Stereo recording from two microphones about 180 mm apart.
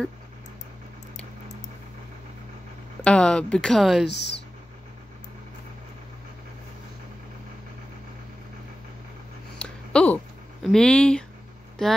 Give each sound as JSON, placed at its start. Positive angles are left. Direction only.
{"t": 3.0, "sound": "speech", "side_deg": 5}
{"t": 4.1, "sound": "speech", "side_deg": 70}
{"t": 9.6, "sound": "a sound", "side_deg": 5}